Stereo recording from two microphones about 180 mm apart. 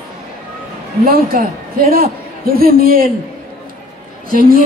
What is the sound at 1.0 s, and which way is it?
A man's voice, 55° right (ahead or behind).